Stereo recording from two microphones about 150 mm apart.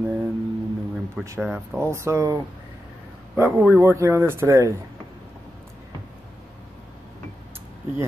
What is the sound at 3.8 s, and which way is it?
Speech, 20° right (ahead or behind).